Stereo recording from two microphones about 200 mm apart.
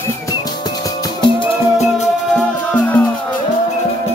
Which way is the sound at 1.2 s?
30° left (ahead or behind).